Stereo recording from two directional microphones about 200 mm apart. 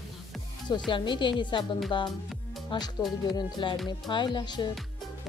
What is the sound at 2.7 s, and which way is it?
Speech, 25° left (ahead or behind).